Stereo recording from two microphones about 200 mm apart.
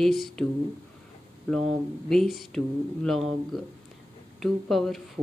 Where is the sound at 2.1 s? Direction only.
Centre (ahead or behind).